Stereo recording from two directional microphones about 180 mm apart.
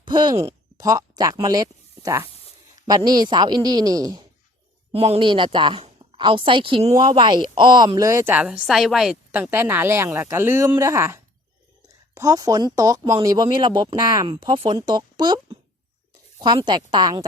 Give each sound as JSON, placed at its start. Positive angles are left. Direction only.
{"t": 0.0, "sound": "speech", "side_deg": -25}
{"t": 4.9, "sound": "a woman's voice", "side_deg": -35}